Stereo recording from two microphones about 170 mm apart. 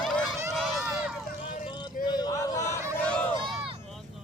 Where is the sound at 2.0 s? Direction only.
25° left (ahead or behind).